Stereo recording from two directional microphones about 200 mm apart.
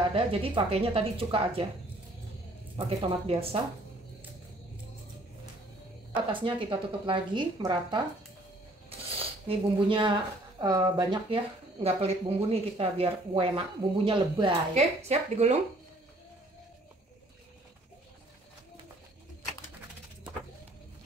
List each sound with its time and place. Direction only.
0.1 s speech: 25° right (ahead or behind)
3.1 s speech: 30° right (ahead or behind)
6.3 s speech: 25° right (ahead or behind)
9.0 s speech: 25° right (ahead or behind)